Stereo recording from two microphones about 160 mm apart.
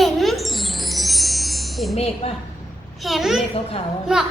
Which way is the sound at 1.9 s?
40° left (ahead or behind).